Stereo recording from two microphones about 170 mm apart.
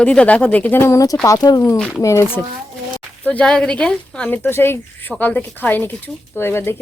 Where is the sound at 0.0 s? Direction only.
5° left (ahead or behind).